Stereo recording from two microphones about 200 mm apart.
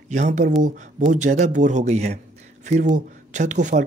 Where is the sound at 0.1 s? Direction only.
35° right (ahead or behind).